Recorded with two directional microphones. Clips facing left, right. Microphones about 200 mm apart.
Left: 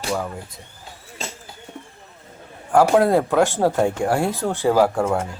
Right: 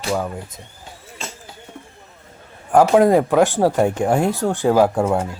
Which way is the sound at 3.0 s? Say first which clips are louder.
Right 3 dB; 15° right (ahead or behind).